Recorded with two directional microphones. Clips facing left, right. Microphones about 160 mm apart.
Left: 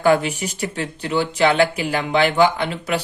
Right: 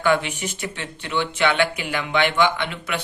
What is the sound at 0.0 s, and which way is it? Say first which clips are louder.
Speech: left 4 dB; 40° left (ahead or behind).